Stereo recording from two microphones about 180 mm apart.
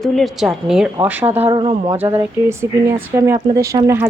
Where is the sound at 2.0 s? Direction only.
15° right (ahead or behind).